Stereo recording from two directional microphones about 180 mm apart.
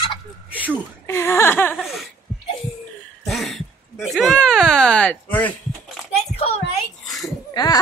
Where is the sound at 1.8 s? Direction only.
Centre (ahead or behind).